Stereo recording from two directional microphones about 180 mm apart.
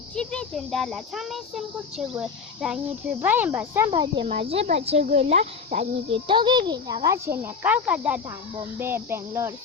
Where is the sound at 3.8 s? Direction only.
25° right (ahead or behind).